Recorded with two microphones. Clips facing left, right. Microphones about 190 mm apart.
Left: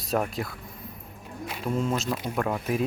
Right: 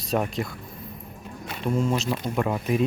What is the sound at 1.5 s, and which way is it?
Speech, centre (ahead or behind).